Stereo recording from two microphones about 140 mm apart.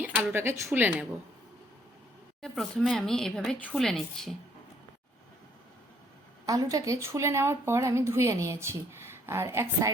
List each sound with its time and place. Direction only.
0.3 s speech: 15° right (ahead or behind)
2.4 s speech: 5° left (ahead or behind)
6.4 s a woman's voice: 25° right (ahead or behind)